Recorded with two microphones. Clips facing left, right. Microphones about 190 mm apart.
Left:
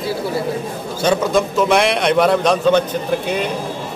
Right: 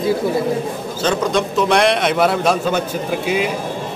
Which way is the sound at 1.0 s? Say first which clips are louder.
Left 2 dB; 5° left (ahead or behind).